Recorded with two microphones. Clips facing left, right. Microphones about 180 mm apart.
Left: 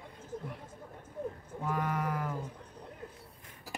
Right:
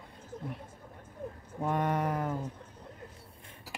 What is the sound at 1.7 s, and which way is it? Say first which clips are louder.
Speech: right 3 dB; 30° right (ahead or behind).